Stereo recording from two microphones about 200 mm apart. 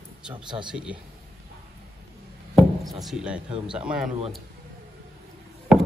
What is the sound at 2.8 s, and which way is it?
Chopping, 20° right (ahead or behind).